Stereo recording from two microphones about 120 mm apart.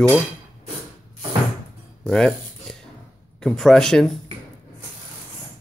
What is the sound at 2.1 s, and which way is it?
Speech, 5° left (ahead or behind).